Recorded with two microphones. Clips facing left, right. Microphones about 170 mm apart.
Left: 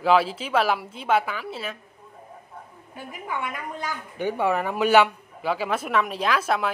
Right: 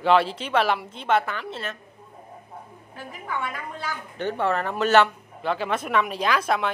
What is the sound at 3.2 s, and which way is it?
Speech, 15° left (ahead or behind).